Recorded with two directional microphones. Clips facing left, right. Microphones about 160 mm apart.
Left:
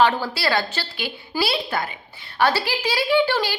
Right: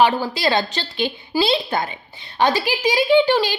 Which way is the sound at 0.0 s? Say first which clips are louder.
Right 2 dB; 15° right (ahead or behind).